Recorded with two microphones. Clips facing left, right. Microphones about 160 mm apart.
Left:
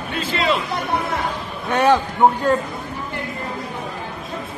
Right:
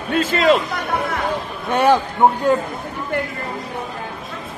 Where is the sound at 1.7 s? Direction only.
10° right (ahead or behind).